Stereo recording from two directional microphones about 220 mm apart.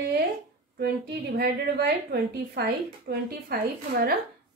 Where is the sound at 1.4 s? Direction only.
45° right (ahead or behind).